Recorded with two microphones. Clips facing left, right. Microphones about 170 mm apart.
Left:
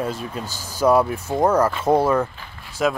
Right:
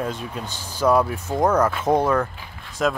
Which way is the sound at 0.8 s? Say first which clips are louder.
Left 2 dB; 10° left (ahead or behind).